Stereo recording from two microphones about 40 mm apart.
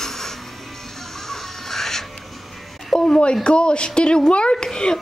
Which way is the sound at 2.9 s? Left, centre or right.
Centre.